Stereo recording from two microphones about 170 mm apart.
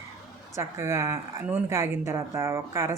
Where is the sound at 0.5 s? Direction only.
15° right (ahead or behind).